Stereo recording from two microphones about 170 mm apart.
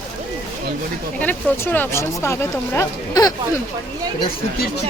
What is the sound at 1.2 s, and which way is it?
Speech, 10° left (ahead or behind).